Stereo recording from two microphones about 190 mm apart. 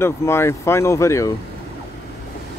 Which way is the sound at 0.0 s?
15° left (ahead or behind).